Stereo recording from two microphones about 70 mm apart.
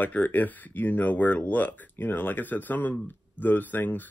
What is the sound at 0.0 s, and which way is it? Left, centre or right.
Speech, left.